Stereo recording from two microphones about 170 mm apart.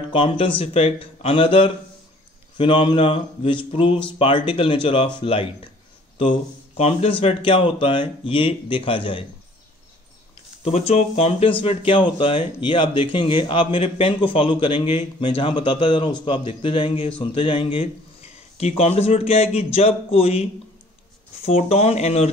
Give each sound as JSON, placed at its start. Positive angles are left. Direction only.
{"t": 0.1, "sound": "a man's voice", "side_deg": 30}
{"t": 6.8, "sound": "speech", "side_deg": 35}
{"t": 10.6, "sound": "a man's voice", "side_deg": 35}